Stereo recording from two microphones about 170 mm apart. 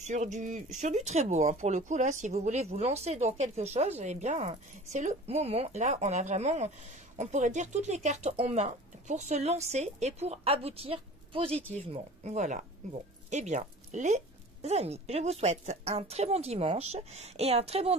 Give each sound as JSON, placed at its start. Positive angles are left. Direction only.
{"t": 0.0, "sound": "a woman's voice", "side_deg": -45}